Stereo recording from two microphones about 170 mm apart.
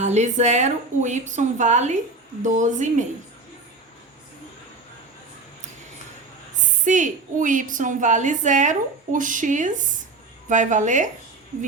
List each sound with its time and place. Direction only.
0.0 s a woman's voice: 40° right (ahead or behind)
6.6 s a woman's voice: 45° right (ahead or behind)